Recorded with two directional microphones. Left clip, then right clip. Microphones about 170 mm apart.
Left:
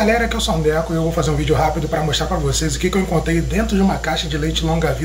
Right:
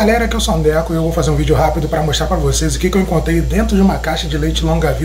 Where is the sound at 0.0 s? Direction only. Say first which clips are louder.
Right 3 dB; 10° right (ahead or behind).